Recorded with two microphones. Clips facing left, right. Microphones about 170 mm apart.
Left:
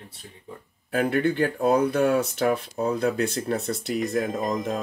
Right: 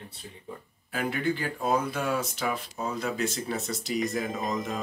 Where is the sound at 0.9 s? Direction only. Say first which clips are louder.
Left 6 dB; 55° left (ahead or behind).